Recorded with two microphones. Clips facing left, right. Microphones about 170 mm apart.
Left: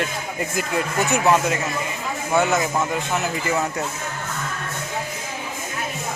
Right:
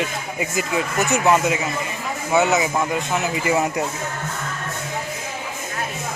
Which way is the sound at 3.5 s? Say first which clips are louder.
Right 4 dB; 15° right (ahead or behind).